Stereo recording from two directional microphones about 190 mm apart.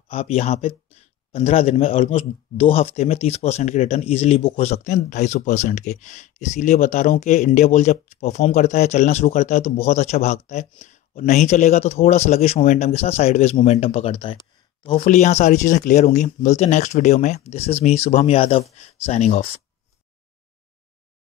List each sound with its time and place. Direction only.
0.1 s speech: 30° left (ahead or behind)